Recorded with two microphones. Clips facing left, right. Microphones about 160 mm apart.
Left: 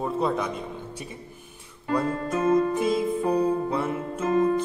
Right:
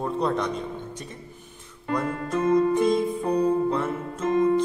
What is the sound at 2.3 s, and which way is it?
Music, 30° left (ahead or behind).